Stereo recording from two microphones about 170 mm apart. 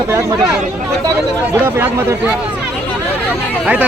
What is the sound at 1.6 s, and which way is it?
Speech, 10° right (ahead or behind).